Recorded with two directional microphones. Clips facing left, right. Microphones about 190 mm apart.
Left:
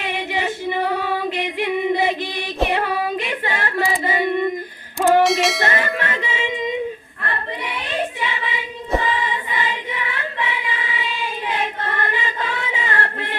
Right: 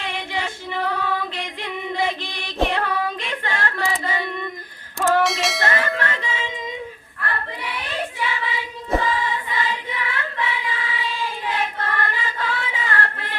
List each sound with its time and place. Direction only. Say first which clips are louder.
0.0 s female singing: left 4 dB; 15° left (ahead or behind)
4.9 s music: left 4 dB; 20° left (ahead or behind)
5.2 s a sound: left 5 dB; centre (ahead or behind)
5.6 s music: left 1 dB; 20° left (ahead or behind)
7.2 s child singing: even; 25° left (ahead or behind)
9.5 s choir: left 1 dB; 20° left (ahead or behind)